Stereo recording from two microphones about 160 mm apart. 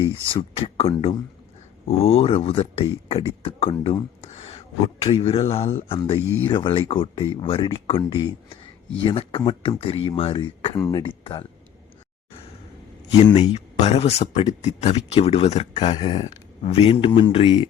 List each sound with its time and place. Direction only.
0.5 s speech: 35° left (ahead or behind)
10.8 s speech: 20° left (ahead or behind)
11.2 s speech: 30° left (ahead or behind)
13.2 s speech: 30° left (ahead or behind)